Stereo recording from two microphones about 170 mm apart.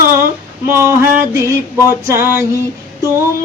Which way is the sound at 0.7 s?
15° right (ahead or behind).